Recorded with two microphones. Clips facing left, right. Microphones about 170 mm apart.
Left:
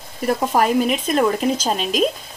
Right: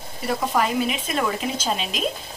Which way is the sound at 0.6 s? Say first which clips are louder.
Left 6 dB; 45° left (ahead or behind).